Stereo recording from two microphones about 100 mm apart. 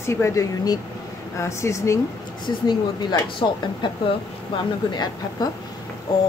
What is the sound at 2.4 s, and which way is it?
Speech, 50° left (ahead or behind).